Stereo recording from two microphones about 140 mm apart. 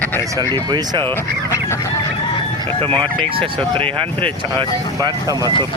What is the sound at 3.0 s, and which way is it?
Speech, 40° right (ahead or behind).